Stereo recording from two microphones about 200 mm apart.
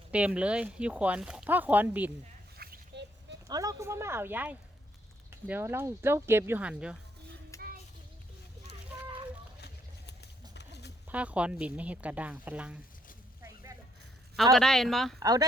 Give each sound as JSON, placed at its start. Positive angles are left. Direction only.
{"t": 0.1, "sound": "speech", "side_deg": -5}
{"t": 2.6, "sound": "a sound", "side_deg": -55}
{"t": 3.4, "sound": "speech", "side_deg": -20}
{"t": 7.5, "sound": "child singing", "side_deg": 15}
{"t": 9.6, "sound": "vehicle", "side_deg": 55}
{"t": 10.5, "sound": "a sound", "side_deg": 55}
{"t": 11.1, "sound": "speech", "side_deg": -5}
{"t": 14.5, "sound": "speech", "side_deg": 0}
{"t": 15.2, "sound": "speech", "side_deg": -20}